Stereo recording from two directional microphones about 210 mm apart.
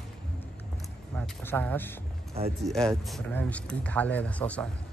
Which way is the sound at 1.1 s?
10° left (ahead or behind).